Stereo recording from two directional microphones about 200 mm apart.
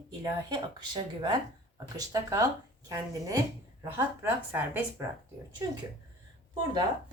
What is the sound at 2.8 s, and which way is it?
Speech, 15° right (ahead or behind).